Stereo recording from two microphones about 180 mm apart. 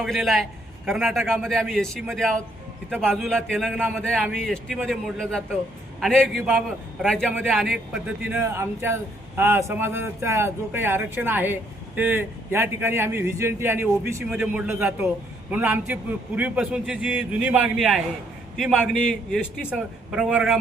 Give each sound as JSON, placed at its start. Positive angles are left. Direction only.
{"t": 0.0, "sound": "a man's voice", "side_deg": 0}